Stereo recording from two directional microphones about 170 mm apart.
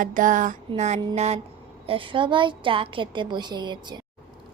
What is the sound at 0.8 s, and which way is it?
A woman's voice, 45° right (ahead or behind).